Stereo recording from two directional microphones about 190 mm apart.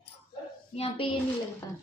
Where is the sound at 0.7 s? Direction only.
30° left (ahead or behind).